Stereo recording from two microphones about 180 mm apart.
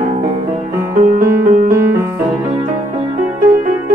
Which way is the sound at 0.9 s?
45° right (ahead or behind).